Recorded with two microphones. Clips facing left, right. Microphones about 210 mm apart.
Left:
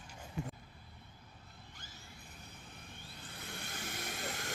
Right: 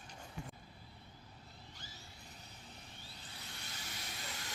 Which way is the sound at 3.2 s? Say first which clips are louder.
Left 8 dB; 50° left (ahead or behind).